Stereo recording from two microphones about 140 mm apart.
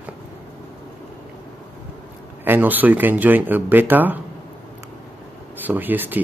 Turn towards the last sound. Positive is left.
turn(degrees=-15)  # may be behind; listen again after turning